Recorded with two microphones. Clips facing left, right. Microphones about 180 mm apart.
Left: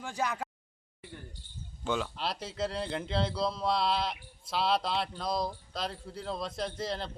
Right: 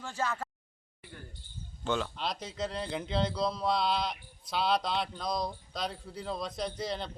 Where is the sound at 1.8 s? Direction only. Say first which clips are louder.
Even; 5° left (ahead or behind).